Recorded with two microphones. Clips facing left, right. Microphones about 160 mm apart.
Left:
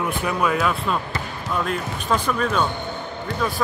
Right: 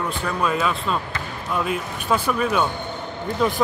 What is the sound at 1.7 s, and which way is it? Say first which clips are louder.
Speech: right 1 dB; 10° right (ahead or behind).